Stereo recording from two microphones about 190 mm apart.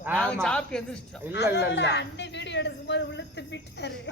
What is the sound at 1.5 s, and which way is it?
Speech, 65° left (ahead or behind).